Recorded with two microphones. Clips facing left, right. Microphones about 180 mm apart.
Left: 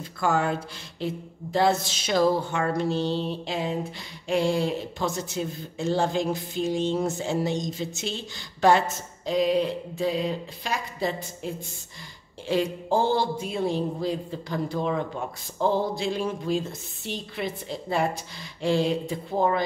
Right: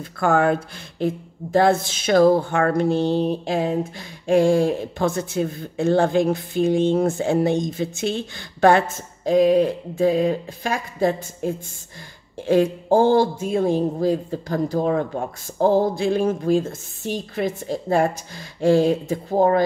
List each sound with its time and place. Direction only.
0.2 s speech: 55° right (ahead or behind)